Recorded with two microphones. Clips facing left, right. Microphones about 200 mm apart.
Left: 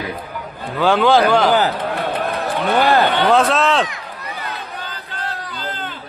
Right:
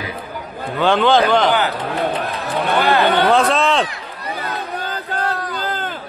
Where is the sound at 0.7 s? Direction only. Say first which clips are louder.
Left 1 dB; 5° left (ahead or behind).